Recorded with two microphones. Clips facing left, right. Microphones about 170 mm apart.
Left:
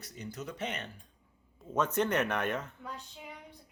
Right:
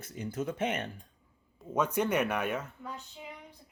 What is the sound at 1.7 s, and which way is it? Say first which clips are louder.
Speech: right 1 dB; 10° right (ahead or behind).